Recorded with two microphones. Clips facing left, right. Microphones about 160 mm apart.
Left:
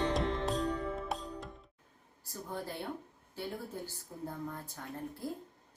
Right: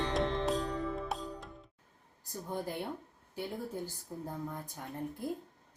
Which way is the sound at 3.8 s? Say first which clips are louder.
Right 1 dB; 15° right (ahead or behind).